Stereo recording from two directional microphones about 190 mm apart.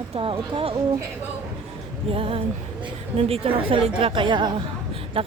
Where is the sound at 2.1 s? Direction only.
30° right (ahead or behind).